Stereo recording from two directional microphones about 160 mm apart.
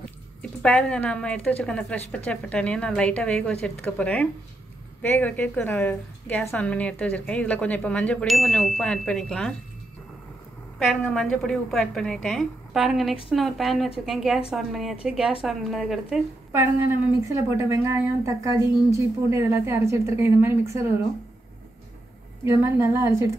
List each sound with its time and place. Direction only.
0.4 s a woman's voice: 5° left (ahead or behind)
10.8 s a woman's voice: centre (ahead or behind)
17.2 s a woman's voice: 15° right (ahead or behind)
22.4 s a woman's voice: 15° right (ahead or behind)